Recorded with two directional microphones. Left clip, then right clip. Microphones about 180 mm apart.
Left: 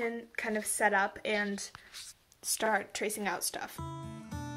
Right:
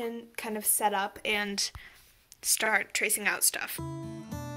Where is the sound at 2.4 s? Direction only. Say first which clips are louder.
Right 4 dB; 20° left (ahead or behind).